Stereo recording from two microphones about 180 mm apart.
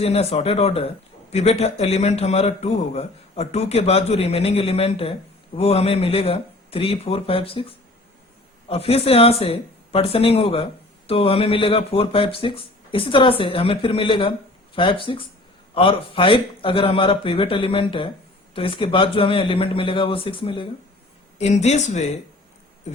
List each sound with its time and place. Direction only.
0.0 s speech: 35° left (ahead or behind)
8.7 s a man's voice: 35° left (ahead or behind)